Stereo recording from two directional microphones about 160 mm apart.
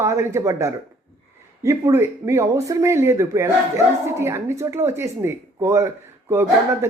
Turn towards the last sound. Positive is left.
turn(degrees=-15)  # may be behind; listen again after turning